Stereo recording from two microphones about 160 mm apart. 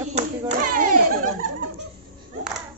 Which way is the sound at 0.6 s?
60° right (ahead or behind).